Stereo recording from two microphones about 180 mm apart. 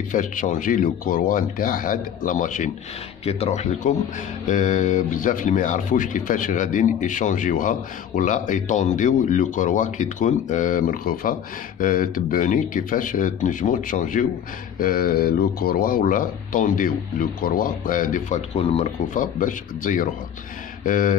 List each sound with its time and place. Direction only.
0.1 s speech: 45° left (ahead or behind)